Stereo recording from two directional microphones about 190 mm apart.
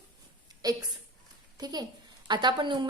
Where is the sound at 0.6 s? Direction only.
20° right (ahead or behind).